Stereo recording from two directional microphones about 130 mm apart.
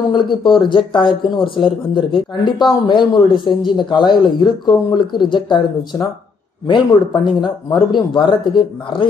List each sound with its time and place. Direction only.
0.1 s speech: 40° left (ahead or behind)